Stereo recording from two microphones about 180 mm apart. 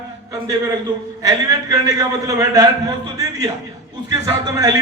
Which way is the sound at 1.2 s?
20° right (ahead or behind).